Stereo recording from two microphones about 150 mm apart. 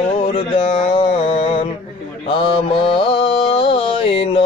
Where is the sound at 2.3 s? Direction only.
35° left (ahead or behind).